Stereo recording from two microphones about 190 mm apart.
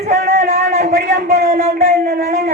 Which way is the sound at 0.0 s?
45° right (ahead or behind).